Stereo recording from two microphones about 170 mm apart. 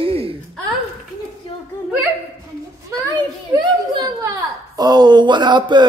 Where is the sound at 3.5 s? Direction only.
25° right (ahead or behind).